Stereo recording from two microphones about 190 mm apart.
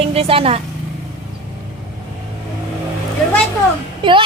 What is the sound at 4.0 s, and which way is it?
Speech, 25° right (ahead or behind).